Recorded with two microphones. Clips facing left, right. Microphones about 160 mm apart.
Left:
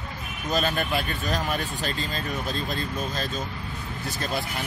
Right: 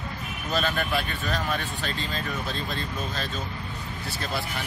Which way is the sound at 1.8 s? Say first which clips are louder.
Left 1 dB; 40° left (ahead or behind).